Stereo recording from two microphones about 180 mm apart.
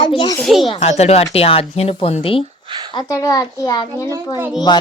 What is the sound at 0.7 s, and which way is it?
A woman's voice, 30° left (ahead or behind).